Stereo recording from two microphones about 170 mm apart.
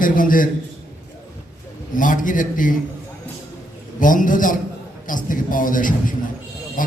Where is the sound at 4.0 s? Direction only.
50° left (ahead or behind).